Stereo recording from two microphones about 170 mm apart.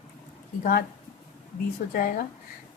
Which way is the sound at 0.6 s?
60° left (ahead or behind).